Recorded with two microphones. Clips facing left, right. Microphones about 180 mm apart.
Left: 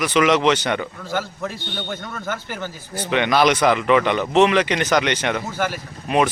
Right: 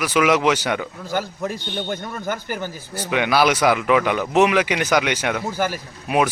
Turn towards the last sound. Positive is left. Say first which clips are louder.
# left 1 dB
turn(degrees=-10)  # may be behind; listen again after turning